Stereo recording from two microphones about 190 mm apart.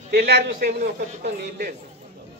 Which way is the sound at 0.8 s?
55° right (ahead or behind).